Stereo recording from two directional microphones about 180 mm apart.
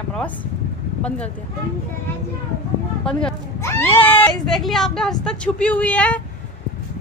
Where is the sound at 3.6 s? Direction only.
15° left (ahead or behind).